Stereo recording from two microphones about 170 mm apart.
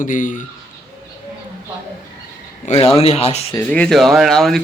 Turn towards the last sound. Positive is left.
turn(degrees=0)  # may be behind; listen again after turning